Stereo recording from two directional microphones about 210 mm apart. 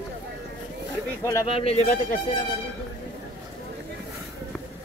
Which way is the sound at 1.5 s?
30° left (ahead or behind).